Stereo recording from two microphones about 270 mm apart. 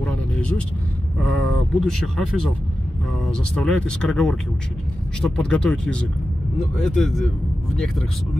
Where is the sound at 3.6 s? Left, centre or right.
Centre.